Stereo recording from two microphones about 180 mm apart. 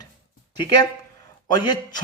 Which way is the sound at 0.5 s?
25° left (ahead or behind).